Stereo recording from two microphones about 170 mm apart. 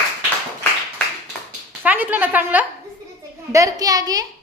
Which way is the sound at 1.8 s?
10° right (ahead or behind).